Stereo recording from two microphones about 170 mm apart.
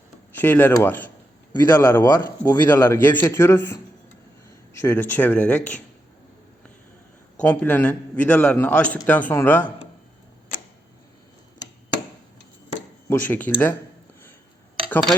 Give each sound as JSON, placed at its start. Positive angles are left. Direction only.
{"t": 0.3, "sound": "a man's voice", "side_deg": 10}
{"t": 7.4, "sound": "a man's voice", "side_deg": 10}
{"t": 13.1, "sound": "a man's voice", "side_deg": 10}
{"t": 14.8, "sound": "tick-tock", "side_deg": 10}